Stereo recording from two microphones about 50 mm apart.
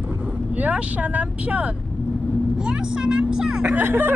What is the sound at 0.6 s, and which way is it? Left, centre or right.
Speech, right.